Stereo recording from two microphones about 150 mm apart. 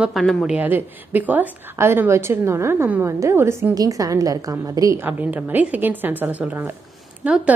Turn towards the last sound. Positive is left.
turn(degrees=-10)  # may be behind; listen again after turning